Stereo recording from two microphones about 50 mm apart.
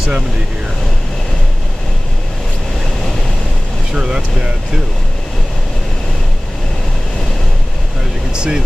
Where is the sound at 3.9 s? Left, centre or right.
Centre.